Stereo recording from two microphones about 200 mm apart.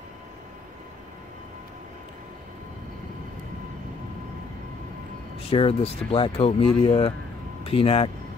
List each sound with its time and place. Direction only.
5.5 s speech: 30° left (ahead or behind)